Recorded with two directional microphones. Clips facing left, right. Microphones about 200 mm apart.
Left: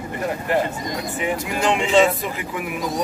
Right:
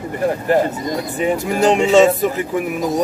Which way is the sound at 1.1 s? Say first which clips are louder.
Right 7 dB; 40° right (ahead or behind).